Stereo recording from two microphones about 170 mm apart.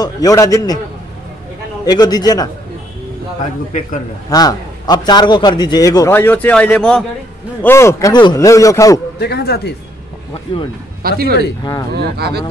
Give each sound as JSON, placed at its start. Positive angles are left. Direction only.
{"t": 0.0, "sound": "a man's voice", "side_deg": 20}
{"t": 1.9, "sound": "a man's voice", "side_deg": 25}
{"t": 4.3, "sound": "a man's voice", "side_deg": 20}
{"t": 7.6, "sound": "a man's voice", "side_deg": 15}
{"t": 9.2, "sound": "speech", "side_deg": 70}
{"t": 11.0, "sound": "speech", "side_deg": -65}